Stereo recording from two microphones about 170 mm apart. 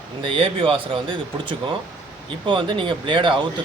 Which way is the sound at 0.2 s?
30° right (ahead or behind).